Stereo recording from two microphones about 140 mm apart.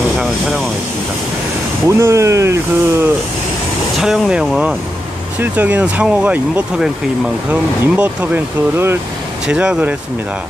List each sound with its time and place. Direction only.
0.2 s vehicle: centre (ahead or behind)
1.9 s speech: 20° right (ahead or behind)
4.0 s speech: 5° right (ahead or behind)
7.9 s speech: 10° right (ahead or behind)